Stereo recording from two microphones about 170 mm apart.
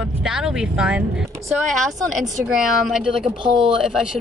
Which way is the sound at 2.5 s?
Centre (ahead or behind).